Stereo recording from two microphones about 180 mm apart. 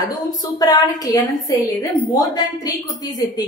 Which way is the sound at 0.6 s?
20° left (ahead or behind).